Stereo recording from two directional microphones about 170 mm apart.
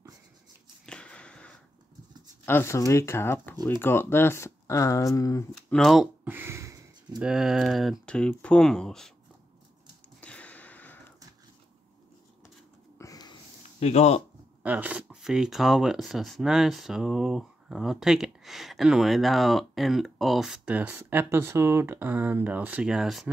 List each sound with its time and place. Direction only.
0.8 s a sound: 5° left (ahead or behind)
2.4 s speech: 15° left (ahead or behind)
5.7 s speech: centre (ahead or behind)
6.2 s a sound: 15° right (ahead or behind)
7.2 s speech: 5° right (ahead or behind)
10.2 s sniff: 10° left (ahead or behind)
13.0 s a sound: 20° left (ahead or behind)
13.7 s speech: 40° left (ahead or behind)
14.6 s speech: 10° right (ahead or behind)